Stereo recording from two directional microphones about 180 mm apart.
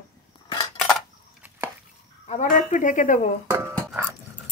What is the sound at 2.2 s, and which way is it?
Speech, 45° left (ahead or behind).